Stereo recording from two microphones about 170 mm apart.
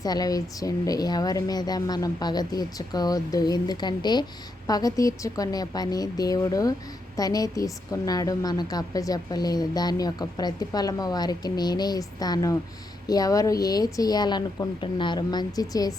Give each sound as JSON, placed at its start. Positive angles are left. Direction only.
{"t": 0.0, "sound": "a woman's voice", "side_deg": 20}